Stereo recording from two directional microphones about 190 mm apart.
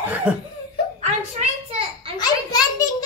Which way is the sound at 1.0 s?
35° right (ahead or behind).